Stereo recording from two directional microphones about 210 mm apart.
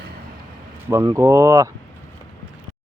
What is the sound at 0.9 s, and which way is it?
Speech, 15° right (ahead or behind).